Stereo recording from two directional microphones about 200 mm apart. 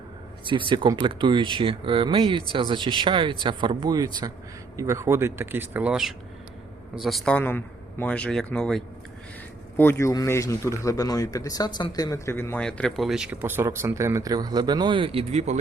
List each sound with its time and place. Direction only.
0.7 s a man's voice: 25° right (ahead or behind)